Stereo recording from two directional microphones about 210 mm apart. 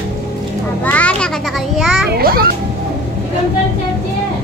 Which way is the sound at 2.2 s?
45° right (ahead or behind).